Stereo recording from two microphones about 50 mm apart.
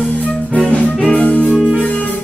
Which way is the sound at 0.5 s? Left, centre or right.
Centre.